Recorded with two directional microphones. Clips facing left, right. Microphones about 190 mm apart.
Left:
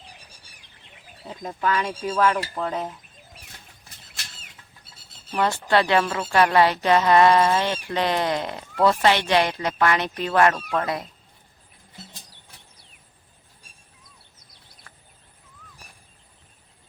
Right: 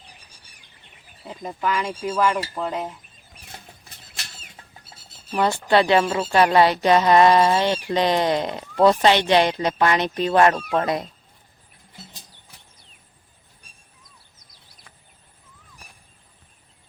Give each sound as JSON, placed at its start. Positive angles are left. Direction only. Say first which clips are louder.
{"t": 1.3, "sound": "speech", "louder": "even", "side_deg": -10}
{"t": 5.3, "sound": "speech", "louder": "right 2 dB", "side_deg": -15}